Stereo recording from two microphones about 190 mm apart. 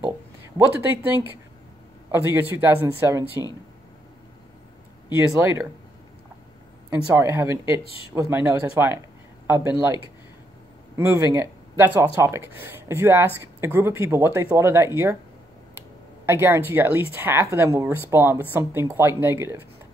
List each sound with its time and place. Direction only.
0.6 s speech: 10° right (ahead or behind)
5.1 s speech: 10° right (ahead or behind)
6.9 s speech: 15° right (ahead or behind)
11.0 s speech: 15° right (ahead or behind)
16.3 s speech: 10° right (ahead or behind)